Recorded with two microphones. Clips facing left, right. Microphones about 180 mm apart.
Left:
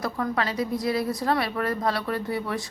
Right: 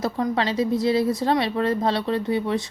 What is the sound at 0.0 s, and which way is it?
A woman's voice, 25° right (ahead or behind).